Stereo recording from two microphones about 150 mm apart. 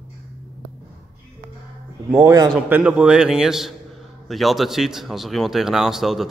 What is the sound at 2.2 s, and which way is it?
Speech, 25° right (ahead or behind).